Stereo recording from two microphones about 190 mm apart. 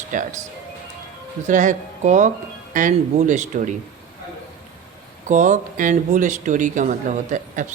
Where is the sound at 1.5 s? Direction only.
40° right (ahead or behind).